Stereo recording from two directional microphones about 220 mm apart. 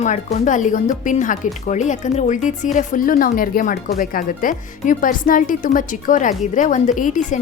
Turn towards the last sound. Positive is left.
turn(degrees=35)  # may be behind; listen again after turning